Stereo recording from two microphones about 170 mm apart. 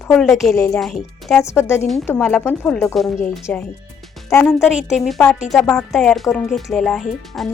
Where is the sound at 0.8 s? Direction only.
Centre (ahead or behind).